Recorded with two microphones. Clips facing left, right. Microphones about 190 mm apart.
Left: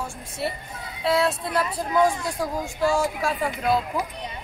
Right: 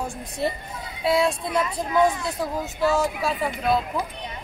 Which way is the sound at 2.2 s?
15° left (ahead or behind).